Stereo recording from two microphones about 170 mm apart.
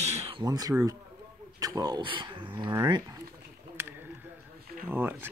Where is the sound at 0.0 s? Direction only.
35° right (ahead or behind); by 0.9 s 20° right (ahead or behind).